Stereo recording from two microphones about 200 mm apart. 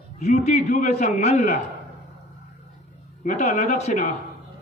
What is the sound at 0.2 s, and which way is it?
A man's voice, 35° left (ahead or behind).